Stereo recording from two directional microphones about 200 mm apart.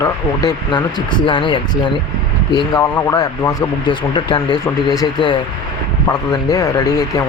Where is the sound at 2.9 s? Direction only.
15° left (ahead or behind).